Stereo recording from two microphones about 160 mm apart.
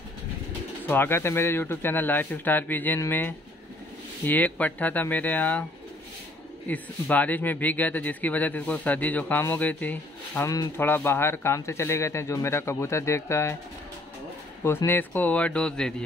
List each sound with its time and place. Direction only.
0.8 s speech: 15° left (ahead or behind)
6.7 s speech: 10° left (ahead or behind)
14.9 s speech: 10° left (ahead or behind)